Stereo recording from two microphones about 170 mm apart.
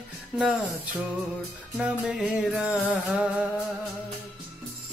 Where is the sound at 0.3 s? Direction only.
10° right (ahead or behind).